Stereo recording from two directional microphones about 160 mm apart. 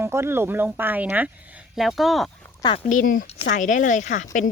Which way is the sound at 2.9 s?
55° left (ahead or behind).